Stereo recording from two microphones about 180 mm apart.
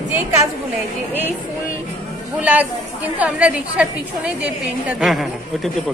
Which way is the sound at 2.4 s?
10° right (ahead or behind).